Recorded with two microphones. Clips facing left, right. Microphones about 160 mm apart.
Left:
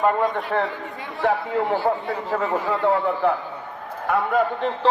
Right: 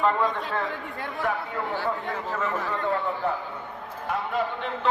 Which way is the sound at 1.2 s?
75° left (ahead or behind).